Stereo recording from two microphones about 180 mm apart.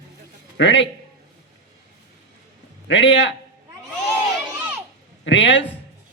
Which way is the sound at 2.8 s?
80° left.